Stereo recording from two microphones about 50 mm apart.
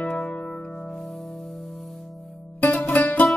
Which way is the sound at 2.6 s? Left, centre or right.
Left.